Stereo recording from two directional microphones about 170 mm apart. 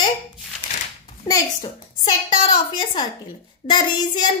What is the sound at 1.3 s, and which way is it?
A woman's voice, 20° left (ahead or behind).